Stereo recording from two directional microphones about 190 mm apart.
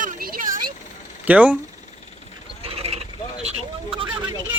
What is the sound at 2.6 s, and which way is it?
Pulleys, 30° right (ahead or behind).